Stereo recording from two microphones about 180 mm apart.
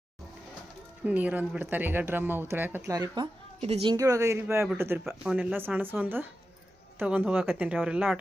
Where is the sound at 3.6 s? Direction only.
30° right (ahead or behind).